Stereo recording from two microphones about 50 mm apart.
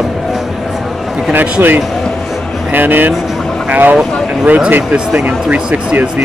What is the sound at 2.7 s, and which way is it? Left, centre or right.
Speech, right.